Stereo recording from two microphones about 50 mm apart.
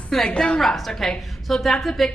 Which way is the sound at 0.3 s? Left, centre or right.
Left.